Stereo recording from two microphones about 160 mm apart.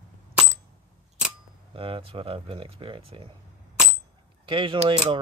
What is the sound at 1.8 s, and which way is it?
Speech, 35° right (ahead or behind).